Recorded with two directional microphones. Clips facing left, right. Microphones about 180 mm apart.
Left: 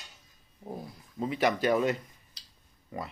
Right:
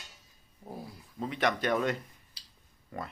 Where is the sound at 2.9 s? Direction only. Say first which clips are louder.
Left 2 dB; 5° left (ahead or behind).